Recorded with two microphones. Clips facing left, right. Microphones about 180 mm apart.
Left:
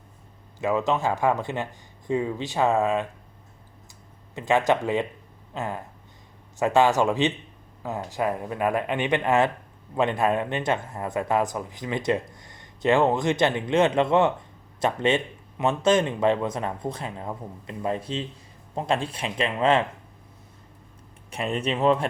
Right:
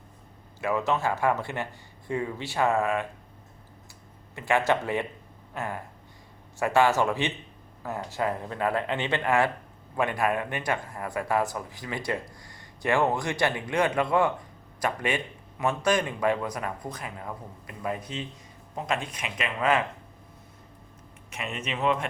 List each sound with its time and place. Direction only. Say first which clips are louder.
0.6 s speech: left 3 dB; 20° left (ahead or behind)
4.4 s speech: left 3 dB; 20° left (ahead or behind)
21.2 s speech: left 7 dB; 35° left (ahead or behind)